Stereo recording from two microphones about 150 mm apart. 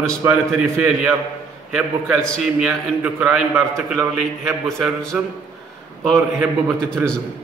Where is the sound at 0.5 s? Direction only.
10° right (ahead or behind).